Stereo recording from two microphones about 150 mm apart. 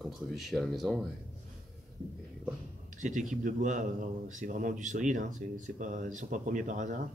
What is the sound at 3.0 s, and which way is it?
Speech, 55° right (ahead or behind).